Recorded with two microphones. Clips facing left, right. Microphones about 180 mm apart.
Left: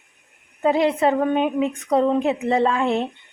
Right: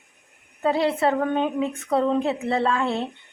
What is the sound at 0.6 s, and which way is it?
Speech, 15° left (ahead or behind).